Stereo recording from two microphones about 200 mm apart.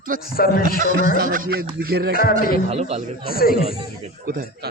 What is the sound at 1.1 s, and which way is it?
Speech, 45° right (ahead or behind).